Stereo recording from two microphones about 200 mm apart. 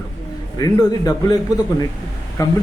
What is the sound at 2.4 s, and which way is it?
Speech, 15° left (ahead or behind).